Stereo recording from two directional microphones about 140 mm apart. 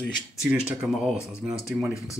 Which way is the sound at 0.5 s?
5° right (ahead or behind).